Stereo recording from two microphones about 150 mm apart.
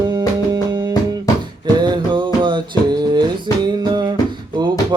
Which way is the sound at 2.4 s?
30° right (ahead or behind).